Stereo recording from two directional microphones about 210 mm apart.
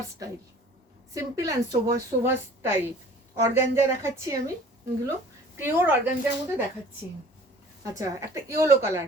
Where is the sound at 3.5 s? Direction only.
35° left (ahead or behind).